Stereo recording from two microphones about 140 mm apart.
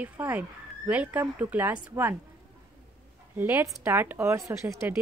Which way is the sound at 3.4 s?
15° right (ahead or behind).